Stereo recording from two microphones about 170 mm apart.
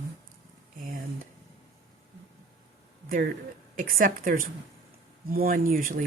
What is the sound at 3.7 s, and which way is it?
Speech, 55° right (ahead or behind).